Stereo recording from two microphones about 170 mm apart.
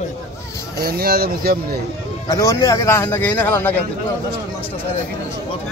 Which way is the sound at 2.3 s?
20° left (ahead or behind).